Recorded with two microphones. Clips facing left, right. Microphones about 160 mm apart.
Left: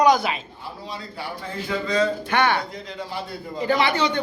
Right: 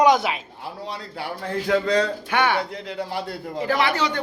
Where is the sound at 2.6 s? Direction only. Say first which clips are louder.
Right 3 dB; 65° right (ahead or behind).